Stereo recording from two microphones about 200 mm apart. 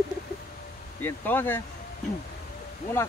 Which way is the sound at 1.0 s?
10° left (ahead or behind).